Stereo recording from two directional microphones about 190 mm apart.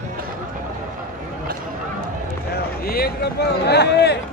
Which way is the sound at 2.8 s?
55° left (ahead or behind).